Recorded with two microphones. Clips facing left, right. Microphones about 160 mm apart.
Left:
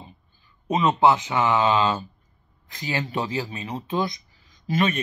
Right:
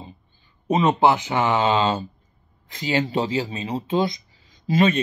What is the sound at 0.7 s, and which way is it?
Speech, 30° right (ahead or behind).